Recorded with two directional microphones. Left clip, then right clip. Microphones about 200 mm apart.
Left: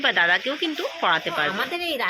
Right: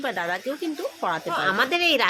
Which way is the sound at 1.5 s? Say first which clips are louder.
Right 5 dB; 35° right (ahead or behind).